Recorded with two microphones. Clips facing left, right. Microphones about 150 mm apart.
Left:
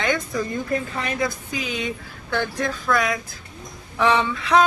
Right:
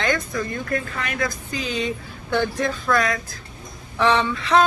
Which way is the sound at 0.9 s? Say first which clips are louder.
Left 2 dB; 30° left (ahead or behind).